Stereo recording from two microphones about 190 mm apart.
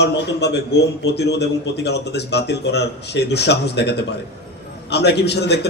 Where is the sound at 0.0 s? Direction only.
60° left (ahead or behind).